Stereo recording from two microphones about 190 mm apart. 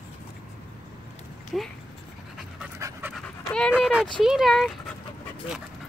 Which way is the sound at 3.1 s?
5° left (ahead or behind).